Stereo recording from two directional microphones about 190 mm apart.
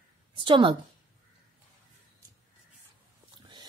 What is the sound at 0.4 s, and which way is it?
Speech, 25° right (ahead or behind).